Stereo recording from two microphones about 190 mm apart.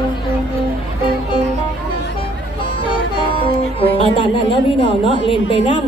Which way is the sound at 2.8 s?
25° left (ahead or behind).